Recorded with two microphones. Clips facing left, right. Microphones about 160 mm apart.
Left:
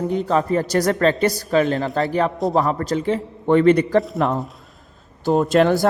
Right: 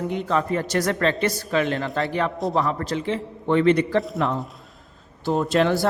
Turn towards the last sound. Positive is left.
turn(degrees=45)  # may be behind; listen again after turning